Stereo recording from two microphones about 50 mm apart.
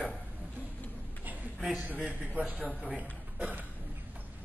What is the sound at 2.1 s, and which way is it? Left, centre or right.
A man's voice, right.